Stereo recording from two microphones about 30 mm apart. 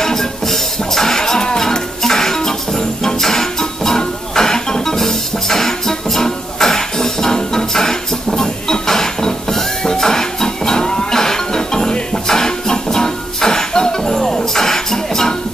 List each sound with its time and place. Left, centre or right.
0.0 s music: centre